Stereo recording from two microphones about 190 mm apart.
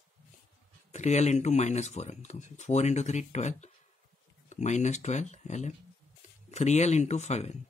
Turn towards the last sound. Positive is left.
turn(degrees=35)  # may be behind; listen again after turning